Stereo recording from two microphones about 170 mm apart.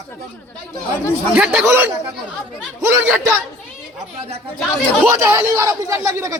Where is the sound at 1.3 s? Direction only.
5° right (ahead or behind).